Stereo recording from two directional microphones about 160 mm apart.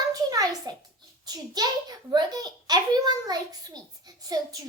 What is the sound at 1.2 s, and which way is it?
A child's voice, 25° right (ahead or behind).